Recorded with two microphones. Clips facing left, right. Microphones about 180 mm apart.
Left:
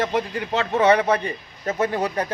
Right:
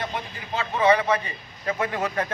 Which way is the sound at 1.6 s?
40° left (ahead or behind).